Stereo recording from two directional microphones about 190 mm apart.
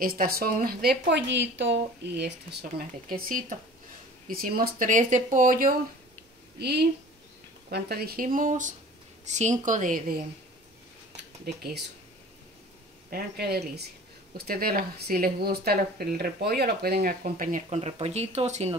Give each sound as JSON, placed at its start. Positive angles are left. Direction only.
{"t": 0.0, "sound": "speech", "side_deg": -50}
{"t": 3.2, "sound": "speech", "side_deg": -45}
{"t": 6.6, "sound": "a woman's voice", "side_deg": -60}
{"t": 11.4, "sound": "speech", "side_deg": -60}
{"t": 13.1, "sound": "speech", "side_deg": -55}